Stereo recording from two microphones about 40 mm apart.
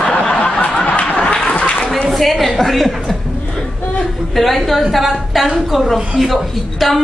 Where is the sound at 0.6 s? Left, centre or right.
Left.